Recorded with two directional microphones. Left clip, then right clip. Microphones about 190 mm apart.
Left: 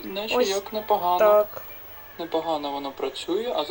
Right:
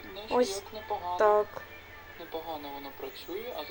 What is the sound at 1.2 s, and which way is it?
Speech, 10° left (ahead or behind).